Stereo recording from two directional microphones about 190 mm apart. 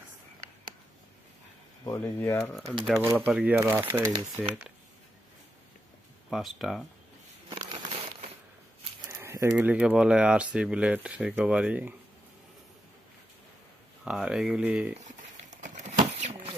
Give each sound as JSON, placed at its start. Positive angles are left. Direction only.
{"t": 1.9, "sound": "speech", "side_deg": 10}
{"t": 2.6, "sound": "speech", "side_deg": -30}
{"t": 3.2, "sound": "speech", "side_deg": -5}
{"t": 6.3, "sound": "speech", "side_deg": 0}
{"t": 7.6, "sound": "a sound", "side_deg": -30}
{"t": 9.2, "sound": "speech", "side_deg": -15}
{"t": 14.0, "sound": "speech", "side_deg": -5}
{"t": 15.6, "sound": "a sound", "side_deg": -45}